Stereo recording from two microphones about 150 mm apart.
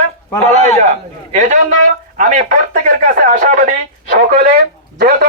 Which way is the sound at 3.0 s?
65° right (ahead or behind).